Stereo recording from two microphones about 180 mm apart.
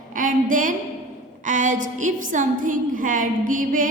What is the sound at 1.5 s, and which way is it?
Music, 45° right (ahead or behind).